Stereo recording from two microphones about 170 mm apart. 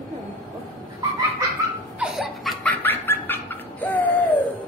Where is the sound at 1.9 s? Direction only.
Centre (ahead or behind).